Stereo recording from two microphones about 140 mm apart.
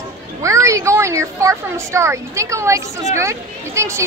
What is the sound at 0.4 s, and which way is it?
A woman's voice, 20° right (ahead or behind).